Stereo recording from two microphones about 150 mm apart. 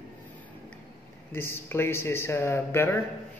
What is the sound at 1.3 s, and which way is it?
Speech, 15° left (ahead or behind).